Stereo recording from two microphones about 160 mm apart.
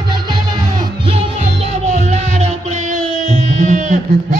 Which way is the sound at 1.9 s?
45° right (ahead or behind).